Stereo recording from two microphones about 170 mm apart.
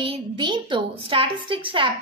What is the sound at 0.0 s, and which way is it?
A woman's voice, 30° right (ahead or behind).